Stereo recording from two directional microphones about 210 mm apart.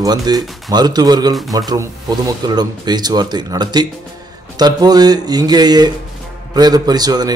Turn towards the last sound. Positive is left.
turn(degrees=-20)  # may be behind; listen again after turning